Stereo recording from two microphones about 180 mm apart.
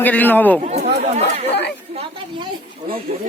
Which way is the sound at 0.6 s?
40° right (ahead or behind).